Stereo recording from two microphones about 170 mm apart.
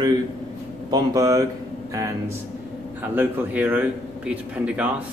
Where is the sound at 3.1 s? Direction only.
10° right (ahead or behind).